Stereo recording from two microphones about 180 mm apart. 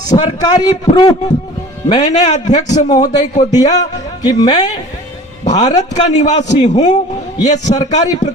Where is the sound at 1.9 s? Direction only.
40° left (ahead or behind).